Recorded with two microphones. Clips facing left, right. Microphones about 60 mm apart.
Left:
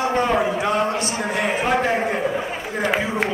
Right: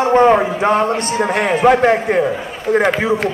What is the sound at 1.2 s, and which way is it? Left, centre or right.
Speech, right.